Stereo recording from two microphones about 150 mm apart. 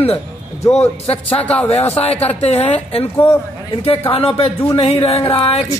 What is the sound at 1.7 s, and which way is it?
A woman's voice, 45° left (ahead or behind).